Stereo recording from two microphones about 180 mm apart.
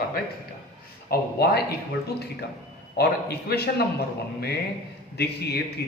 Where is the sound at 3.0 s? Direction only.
60° left (ahead or behind).